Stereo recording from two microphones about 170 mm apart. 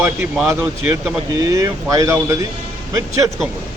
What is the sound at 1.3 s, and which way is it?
Speech, 20° right (ahead or behind).